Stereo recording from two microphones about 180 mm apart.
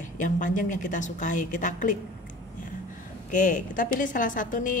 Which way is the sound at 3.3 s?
45° left (ahead or behind).